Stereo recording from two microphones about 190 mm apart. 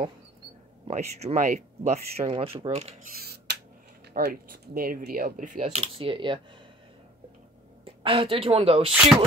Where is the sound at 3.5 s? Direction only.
60° right (ahead or behind).